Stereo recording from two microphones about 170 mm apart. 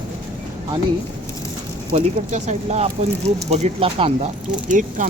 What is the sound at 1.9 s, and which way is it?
Speech, 40° right (ahead or behind).